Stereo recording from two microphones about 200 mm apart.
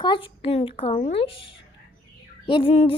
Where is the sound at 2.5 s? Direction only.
25° left (ahead or behind).